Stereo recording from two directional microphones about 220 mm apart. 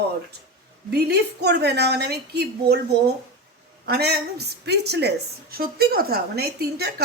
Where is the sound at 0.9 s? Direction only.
50° right (ahead or behind).